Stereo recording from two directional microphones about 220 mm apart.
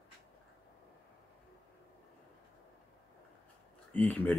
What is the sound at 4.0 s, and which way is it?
Speech, 10° left (ahead or behind).